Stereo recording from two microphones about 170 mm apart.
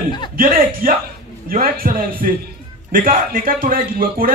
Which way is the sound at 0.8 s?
55° right (ahead or behind).